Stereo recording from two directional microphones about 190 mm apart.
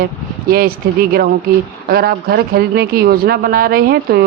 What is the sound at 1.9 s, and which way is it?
Speech, 50° right (ahead or behind).